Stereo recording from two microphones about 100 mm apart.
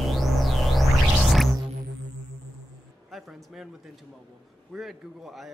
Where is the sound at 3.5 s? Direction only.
5° right (ahead or behind).